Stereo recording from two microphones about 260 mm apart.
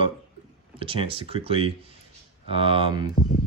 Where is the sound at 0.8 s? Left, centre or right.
Right.